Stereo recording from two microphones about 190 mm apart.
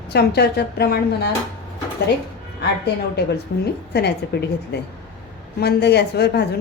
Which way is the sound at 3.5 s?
60° left (ahead or behind).